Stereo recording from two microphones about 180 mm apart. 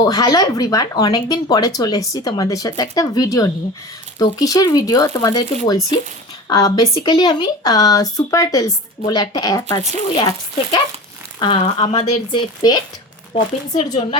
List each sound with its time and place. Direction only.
0.0 s speech: 20° left (ahead or behind)
12.3 s speech: 25° left (ahead or behind)